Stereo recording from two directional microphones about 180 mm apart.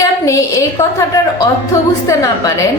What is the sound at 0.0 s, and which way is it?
A woman's voice, 20° left (ahead or behind).